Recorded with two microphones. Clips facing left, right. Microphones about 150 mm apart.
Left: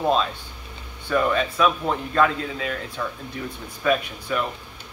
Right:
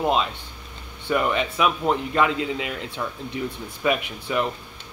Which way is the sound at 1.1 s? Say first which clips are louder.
Left 1 dB; 20° right (ahead or behind).